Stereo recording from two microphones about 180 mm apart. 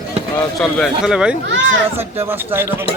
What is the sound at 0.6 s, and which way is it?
Speech, centre (ahead or behind).